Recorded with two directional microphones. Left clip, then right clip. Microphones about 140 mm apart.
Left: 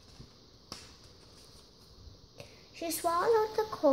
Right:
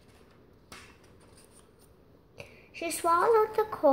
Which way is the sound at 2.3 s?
15° right (ahead or behind).